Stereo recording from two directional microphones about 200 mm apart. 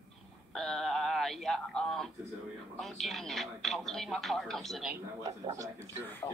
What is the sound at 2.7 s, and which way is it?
Television, centre (ahead or behind).